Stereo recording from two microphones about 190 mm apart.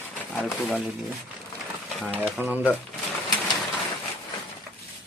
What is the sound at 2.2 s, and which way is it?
Speech, 10° right (ahead or behind).